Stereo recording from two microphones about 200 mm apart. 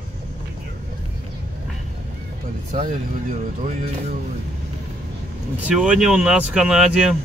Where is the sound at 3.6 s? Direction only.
40° right (ahead or behind).